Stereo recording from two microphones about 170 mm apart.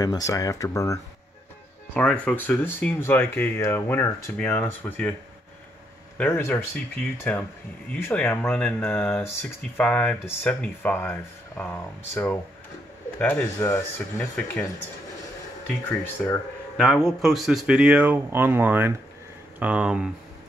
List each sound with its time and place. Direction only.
0.0 s speech: 20° left (ahead or behind)
2.0 s speech: 5° left (ahead or behind)
6.1 s speech: 10° left (ahead or behind)
16.2 s speech: 5° left (ahead or behind)